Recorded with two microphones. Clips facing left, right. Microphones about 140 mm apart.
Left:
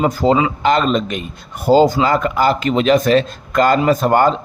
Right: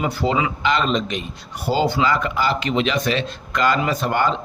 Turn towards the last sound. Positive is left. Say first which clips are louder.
# left 7 dB
turn(degrees=45)  # may be behind; listen again after turning